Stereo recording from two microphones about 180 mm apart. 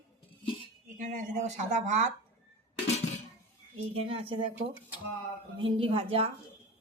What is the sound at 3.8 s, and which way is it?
Speech, 30° right (ahead or behind).